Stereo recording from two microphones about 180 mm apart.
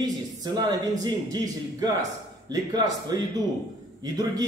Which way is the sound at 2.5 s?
20° right (ahead or behind).